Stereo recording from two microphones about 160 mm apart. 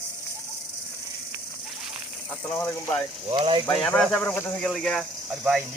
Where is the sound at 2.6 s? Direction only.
15° left (ahead or behind).